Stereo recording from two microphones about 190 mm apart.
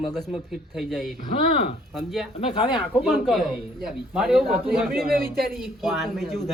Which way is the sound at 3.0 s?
Centre (ahead or behind).